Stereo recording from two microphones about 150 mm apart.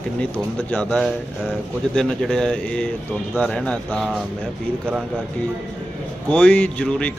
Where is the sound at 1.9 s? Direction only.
5° left (ahead or behind).